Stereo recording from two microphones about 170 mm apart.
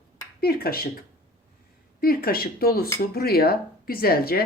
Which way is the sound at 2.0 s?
60° left (ahead or behind).